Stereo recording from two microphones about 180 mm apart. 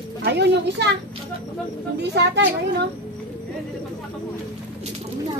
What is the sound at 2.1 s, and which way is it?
Speech, 70° right (ahead or behind).